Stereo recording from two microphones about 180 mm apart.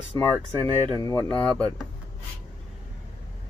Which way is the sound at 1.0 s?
15° left (ahead or behind).